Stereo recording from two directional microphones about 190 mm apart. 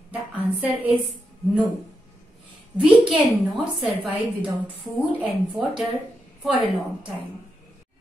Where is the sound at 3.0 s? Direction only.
5° right (ahead or behind).